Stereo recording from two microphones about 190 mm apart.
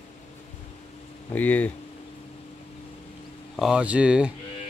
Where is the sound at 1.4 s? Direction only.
10° left (ahead or behind).